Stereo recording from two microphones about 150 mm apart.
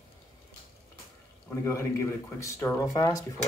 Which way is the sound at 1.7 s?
20° left (ahead or behind).